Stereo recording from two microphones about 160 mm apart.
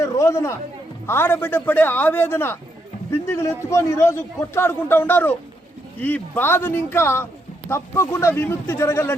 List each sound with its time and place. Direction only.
0.0 s a man's voice: 20° left (ahead or behind)